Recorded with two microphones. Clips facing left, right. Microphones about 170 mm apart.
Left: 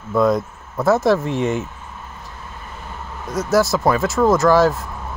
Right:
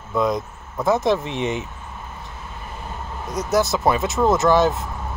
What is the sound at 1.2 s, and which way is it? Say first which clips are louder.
Speech: left 4 dB; 45° left (ahead or behind).